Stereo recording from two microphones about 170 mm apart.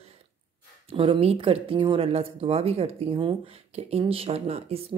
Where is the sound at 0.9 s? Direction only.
35° right (ahead or behind).